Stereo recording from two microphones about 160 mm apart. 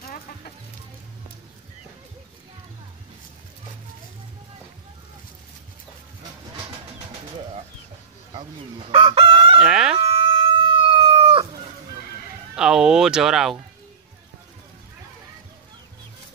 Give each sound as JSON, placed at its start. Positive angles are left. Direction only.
{"t": 8.3, "sound": "chicken", "side_deg": -30}
{"t": 9.6, "sound": "a sound", "side_deg": -5}
{"t": 9.9, "sound": "chicken", "side_deg": -35}
{"t": 12.5, "sound": "speech", "side_deg": -5}